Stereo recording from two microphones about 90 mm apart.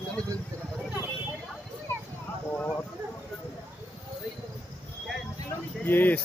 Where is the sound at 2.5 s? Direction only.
25° left (ahead or behind).